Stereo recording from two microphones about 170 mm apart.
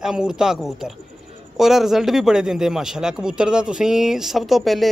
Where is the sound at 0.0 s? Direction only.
5° right (ahead or behind).